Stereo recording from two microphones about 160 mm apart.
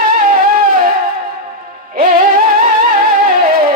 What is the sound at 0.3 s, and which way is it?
Music, 65° right (ahead or behind).